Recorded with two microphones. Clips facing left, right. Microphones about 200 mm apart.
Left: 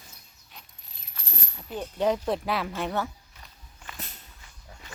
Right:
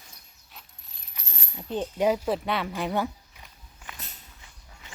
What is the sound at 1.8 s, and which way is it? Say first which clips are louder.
Speech: right 1 dB; 10° right (ahead or behind).